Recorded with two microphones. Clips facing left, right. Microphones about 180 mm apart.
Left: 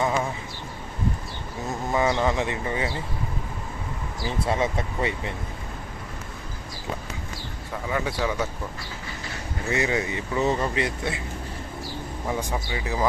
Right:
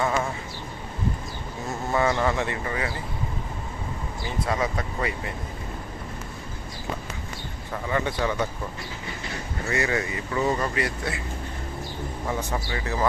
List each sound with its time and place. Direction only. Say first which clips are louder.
0.0 s sheep: even; 10° left (ahead or behind)
1.9 s speech: even; 15° left (ahead or behind)
4.2 s speech: left 2 dB; 30° left (ahead or behind)
7.9 s speech: right 1 dB; 5° left (ahead or behind)
9.6 s speech: left 1 dB; 20° left (ahead or behind)
12.3 s speech: left 1 dB; 15° left (ahead or behind)